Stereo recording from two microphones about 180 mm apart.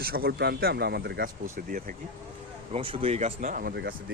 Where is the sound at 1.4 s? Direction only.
50° right (ahead or behind).